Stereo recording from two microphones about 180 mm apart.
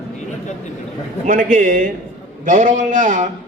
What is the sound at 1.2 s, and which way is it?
A man's voice, 50° right (ahead or behind).